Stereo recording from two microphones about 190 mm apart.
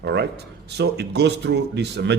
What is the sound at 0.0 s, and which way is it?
Speech, 60° right (ahead or behind).